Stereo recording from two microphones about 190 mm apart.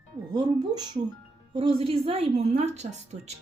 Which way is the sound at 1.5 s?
30° right (ahead or behind).